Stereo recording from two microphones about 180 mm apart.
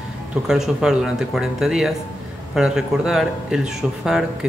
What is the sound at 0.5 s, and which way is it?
Speech, 5° right (ahead or behind).